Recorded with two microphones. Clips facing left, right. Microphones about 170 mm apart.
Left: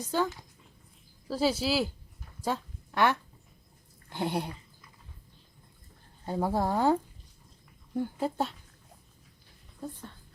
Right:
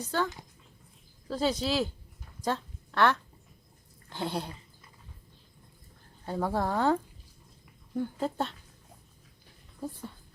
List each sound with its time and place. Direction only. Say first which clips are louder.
0.0 s speech: left 1 dB; 10° left (ahead or behind)
1.3 s speech: left 1 dB; 5° left (ahead or behind)
2.4 s a sound: right 1 dB; 10° left (ahead or behind)
4.1 s speech: left 2 dB; 15° left (ahead or behind)
6.2 s speech: left 1 dB; 15° left (ahead or behind)
8.2 s speech: left 2 dB; 5° left (ahead or behind)
9.8 s speech: right 2 dB; 10° right (ahead or behind)